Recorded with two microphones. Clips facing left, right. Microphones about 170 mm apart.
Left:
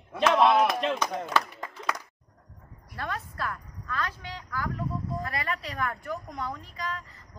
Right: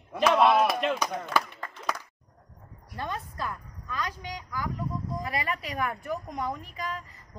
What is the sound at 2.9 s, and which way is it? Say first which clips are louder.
A woman's voice: even; 20° right (ahead or behind).